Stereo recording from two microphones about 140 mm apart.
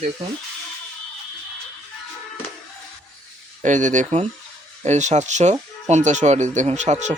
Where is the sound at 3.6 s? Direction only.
60° right (ahead or behind).